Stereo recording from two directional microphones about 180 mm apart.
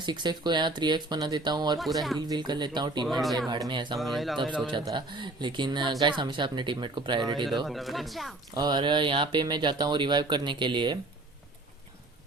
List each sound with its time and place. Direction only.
0.0 s speech: 25° right (ahead or behind)
1.8 s speech: centre (ahead or behind)
2.3 s speech: 25° right (ahead or behind)
3.1 s speech: centre (ahead or behind)
3.7 s speech: 25° right (ahead or behind)
3.9 s speech: centre (ahead or behind)
4.6 s speech: 25° right (ahead or behind)
7.7 s speech: centre (ahead or behind)
8.5 s speech: 25° right (ahead or behind)